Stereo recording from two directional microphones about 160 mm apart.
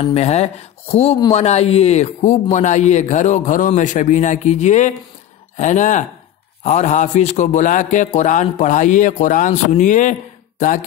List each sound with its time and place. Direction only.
0.1 s a man's voice: 40° left (ahead or behind)